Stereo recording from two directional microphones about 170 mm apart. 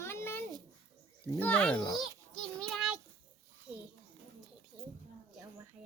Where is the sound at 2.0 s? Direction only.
5° left (ahead or behind).